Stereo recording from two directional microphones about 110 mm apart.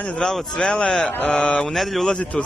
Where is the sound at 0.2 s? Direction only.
5° left (ahead or behind).